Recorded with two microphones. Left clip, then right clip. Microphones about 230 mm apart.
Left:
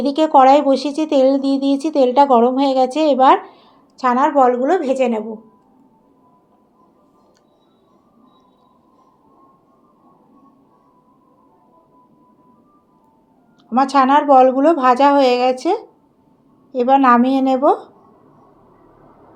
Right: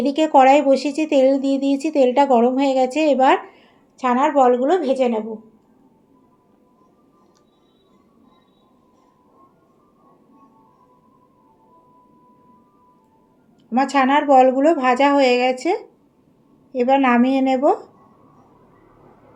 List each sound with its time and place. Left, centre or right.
0.0 s speech: centre
13.7 s a woman's voice: centre